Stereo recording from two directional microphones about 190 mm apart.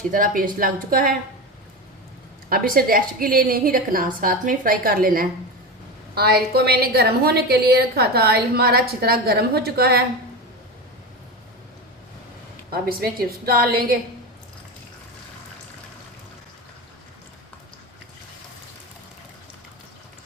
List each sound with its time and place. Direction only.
0.1 s a woman's voice: 45° right (ahead or behind)
2.5 s a woman's voice: 50° right (ahead or behind)
12.7 s a woman's voice: 50° right (ahead or behind)